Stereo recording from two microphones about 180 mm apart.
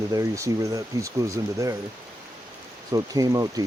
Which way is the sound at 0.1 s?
20° right (ahead or behind).